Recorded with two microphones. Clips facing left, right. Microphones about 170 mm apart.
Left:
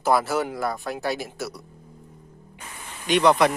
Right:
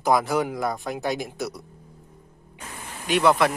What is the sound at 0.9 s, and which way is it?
Speech, 15° right (ahead or behind).